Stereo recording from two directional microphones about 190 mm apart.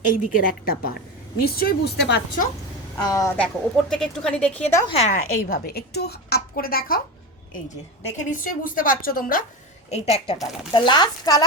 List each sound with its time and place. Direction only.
0.1 s a woman's voice: 45° left (ahead or behind); by 2.2 s 60° left (ahead or behind)
3.0 s speech: 20° left (ahead or behind)
3.3 s a woman's voice: 5° left (ahead or behind)
4.9 s a woman's voice: 35° left (ahead or behind)
5.4 s a woman's voice: 50° left (ahead or behind)
8.0 s a woman's voice: 45° left (ahead or behind)
9.9 s a woman's voice: 30° left (ahead or behind)